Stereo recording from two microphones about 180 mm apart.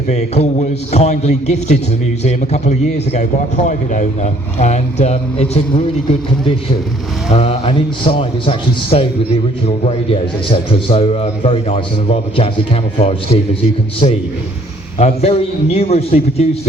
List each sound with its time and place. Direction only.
0.1 s a man's voice: 40° left (ahead or behind)
7.3 s a man's voice: 40° left (ahead or behind)